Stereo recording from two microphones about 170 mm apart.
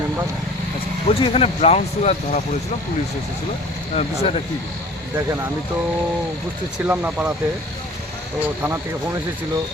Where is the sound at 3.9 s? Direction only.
35° left (ahead or behind).